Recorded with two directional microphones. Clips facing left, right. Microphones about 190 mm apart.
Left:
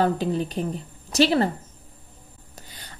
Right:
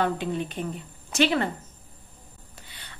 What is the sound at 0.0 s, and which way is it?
A woman's voice, 35° left (ahead or behind).